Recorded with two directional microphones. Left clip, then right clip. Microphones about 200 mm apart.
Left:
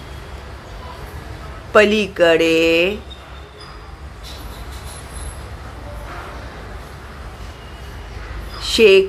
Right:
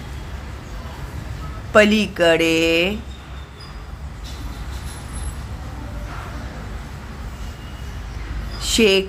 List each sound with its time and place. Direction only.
1.7 s speech: 15° right (ahead or behind)
8.6 s speech: 15° right (ahead or behind)